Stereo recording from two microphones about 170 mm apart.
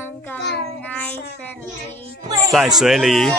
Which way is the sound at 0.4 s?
90° left.